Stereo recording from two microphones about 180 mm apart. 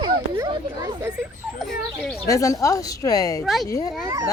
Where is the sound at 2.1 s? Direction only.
20° left (ahead or behind).